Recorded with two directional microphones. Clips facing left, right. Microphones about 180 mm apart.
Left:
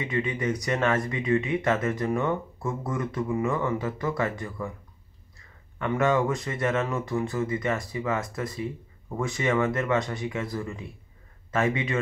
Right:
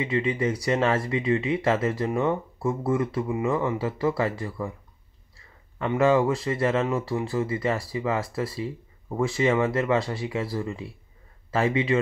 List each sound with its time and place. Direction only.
0.0 s speech: 30° right (ahead or behind)
5.8 s speech: 30° right (ahead or behind)